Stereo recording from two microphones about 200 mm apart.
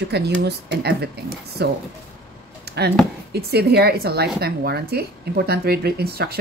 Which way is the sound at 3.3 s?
55° right (ahead or behind).